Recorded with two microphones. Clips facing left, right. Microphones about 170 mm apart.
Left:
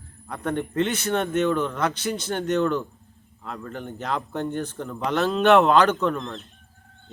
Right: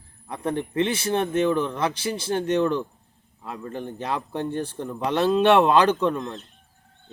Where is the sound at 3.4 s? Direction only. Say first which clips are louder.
Right 1 dB; 10° right (ahead or behind).